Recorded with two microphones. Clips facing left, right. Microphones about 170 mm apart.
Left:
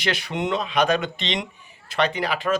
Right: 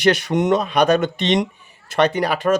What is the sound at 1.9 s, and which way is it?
Speech, 45° right (ahead or behind).